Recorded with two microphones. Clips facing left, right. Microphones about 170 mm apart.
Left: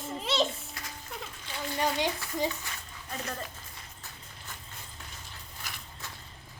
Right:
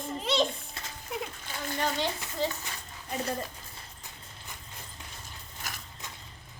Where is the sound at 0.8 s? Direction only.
25° right (ahead or behind).